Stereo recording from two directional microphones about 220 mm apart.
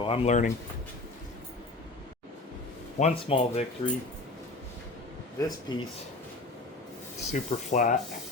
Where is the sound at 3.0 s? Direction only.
30° left (ahead or behind).